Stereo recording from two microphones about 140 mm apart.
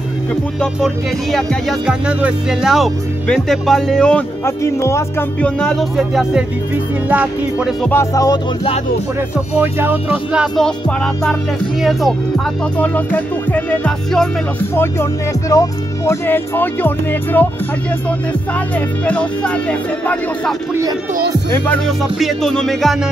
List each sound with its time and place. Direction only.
0.7 s speech: centre (ahead or behind)
4.5 s speech: 20° left (ahead or behind)
5.4 s speech: 5° left (ahead or behind)
7.1 s music: 10° right (ahead or behind)
7.9 s speech: 20° left (ahead or behind)
9.6 s music: 15° right (ahead or behind)
11.8 s speech: centre (ahead or behind)
12.7 s speech: 10° left (ahead or behind)
14.6 s speech: 15° left (ahead or behind)
19.0 s speech: 10° left (ahead or behind)
21.8 s speech: centre (ahead or behind)